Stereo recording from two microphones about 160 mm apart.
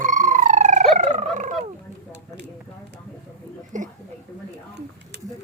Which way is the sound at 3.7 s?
50° right (ahead or behind).